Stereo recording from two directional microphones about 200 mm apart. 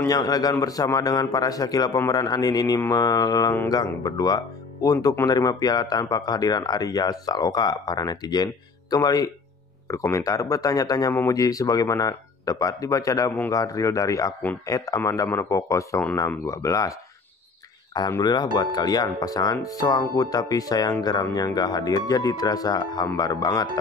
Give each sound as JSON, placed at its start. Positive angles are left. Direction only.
{"t": 0.0, "sound": "speech", "side_deg": 20}
{"t": 17.9, "sound": "speech", "side_deg": 20}